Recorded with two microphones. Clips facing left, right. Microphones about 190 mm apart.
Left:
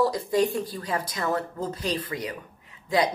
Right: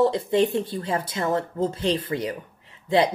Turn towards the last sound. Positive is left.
turn(degrees=-30)  # may be behind; listen again after turning